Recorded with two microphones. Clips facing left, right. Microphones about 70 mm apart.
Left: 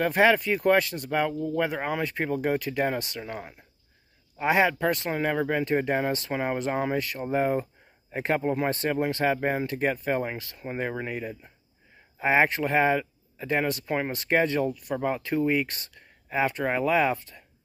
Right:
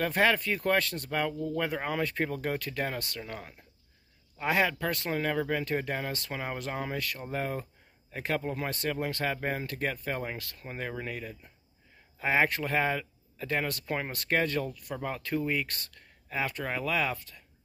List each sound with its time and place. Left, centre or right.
0.0 s speech: centre